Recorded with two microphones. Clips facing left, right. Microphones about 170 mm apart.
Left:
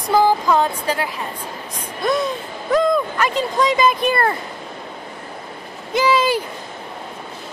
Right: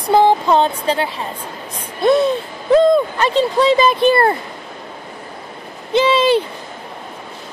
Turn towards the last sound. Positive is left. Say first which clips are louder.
# right 4 dB
turn(degrees=-25)  # may be behind; listen again after turning